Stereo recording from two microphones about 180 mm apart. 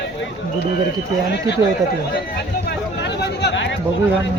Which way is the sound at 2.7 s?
65° left (ahead or behind).